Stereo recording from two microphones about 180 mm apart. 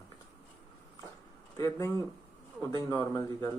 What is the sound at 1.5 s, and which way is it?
Speech, 15° left (ahead or behind).